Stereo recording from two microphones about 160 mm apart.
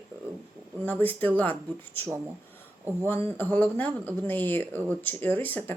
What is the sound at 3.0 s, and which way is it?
Speech, 15° left (ahead or behind).